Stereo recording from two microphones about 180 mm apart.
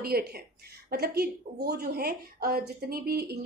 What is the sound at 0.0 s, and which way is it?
A woman's voice, 60° right (ahead or behind).